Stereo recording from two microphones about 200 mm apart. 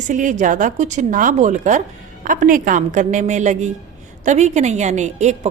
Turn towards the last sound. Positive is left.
turn(degrees=-35)  # may be behind; listen again after turning